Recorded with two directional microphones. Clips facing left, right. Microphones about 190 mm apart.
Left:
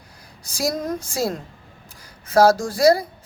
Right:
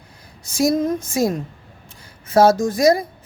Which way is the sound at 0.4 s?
25° right (ahead or behind).